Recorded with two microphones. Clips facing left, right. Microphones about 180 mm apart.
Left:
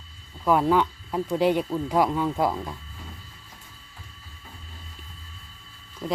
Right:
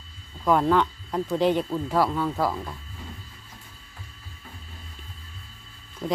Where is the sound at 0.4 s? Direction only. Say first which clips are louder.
Even; 10° left (ahead or behind).